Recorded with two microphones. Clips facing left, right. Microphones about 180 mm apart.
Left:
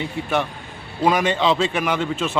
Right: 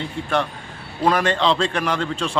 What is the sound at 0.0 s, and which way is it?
A man's voice, 5° left (ahead or behind).